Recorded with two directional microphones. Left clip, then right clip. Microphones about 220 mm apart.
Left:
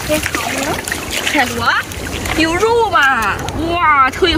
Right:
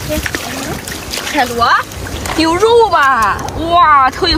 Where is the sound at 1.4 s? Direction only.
15° right (ahead or behind).